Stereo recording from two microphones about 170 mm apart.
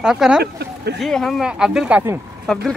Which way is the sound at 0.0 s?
5° right (ahead or behind).